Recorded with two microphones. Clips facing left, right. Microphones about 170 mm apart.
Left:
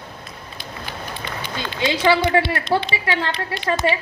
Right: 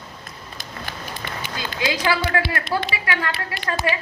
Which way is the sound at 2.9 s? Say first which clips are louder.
Left 3 dB; 25° left (ahead or behind).